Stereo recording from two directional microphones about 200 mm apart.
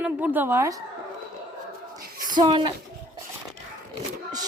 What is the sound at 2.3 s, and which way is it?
Speech, 25° right (ahead or behind).